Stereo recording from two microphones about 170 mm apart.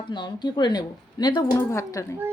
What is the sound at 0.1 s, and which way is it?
A woman's voice, 25° left (ahead or behind).